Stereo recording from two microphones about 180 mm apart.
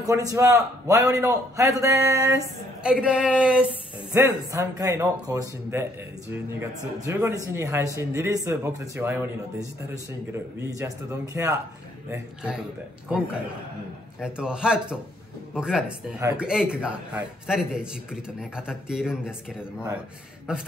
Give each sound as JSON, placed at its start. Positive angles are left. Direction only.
{"t": 0.0, "sound": "a man's voice", "side_deg": -20}
{"t": 2.8, "sound": "a man's voice", "side_deg": -5}
{"t": 4.1, "sound": "a man's voice", "side_deg": -15}
{"t": 7.1, "sound": "a man's voice", "side_deg": -15}
{"t": 10.3, "sound": "a man's voice", "side_deg": -15}
{"t": 12.1, "sound": "a man's voice", "side_deg": -5}
{"t": 14.2, "sound": "a man's voice", "side_deg": -5}